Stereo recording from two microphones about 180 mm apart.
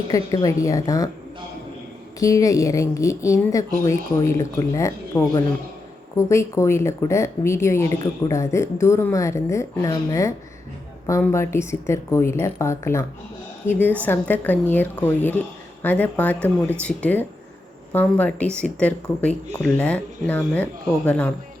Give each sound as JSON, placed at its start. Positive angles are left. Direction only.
{"t": 0.1, "sound": "a woman's voice", "side_deg": 20}
{"t": 2.1, "sound": "a woman's voice", "side_deg": 20}